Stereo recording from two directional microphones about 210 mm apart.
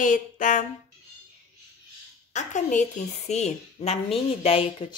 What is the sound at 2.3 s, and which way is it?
A woman's voice, 35° left (ahead or behind).